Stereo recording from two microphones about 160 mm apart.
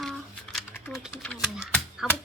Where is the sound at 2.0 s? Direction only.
5° right (ahead or behind).